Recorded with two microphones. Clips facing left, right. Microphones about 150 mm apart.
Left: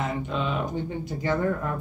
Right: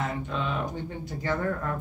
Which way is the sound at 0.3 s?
20° left (ahead or behind).